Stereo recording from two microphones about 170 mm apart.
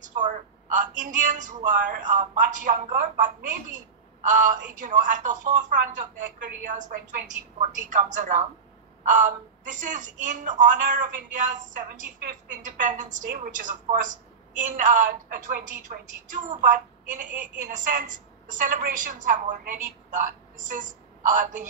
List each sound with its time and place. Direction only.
0.0 s a woman's voice: 50° right (ahead or behind)